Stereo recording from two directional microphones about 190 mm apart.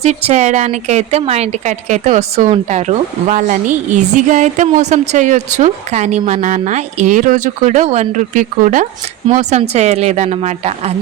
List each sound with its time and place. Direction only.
0.0 s speech: 35° right (ahead or behind)